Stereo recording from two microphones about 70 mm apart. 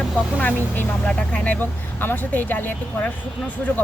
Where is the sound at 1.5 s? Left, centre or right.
Left.